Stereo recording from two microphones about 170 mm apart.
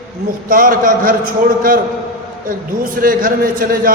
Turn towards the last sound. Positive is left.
turn(degrees=-55)  # may be behind; listen again after turning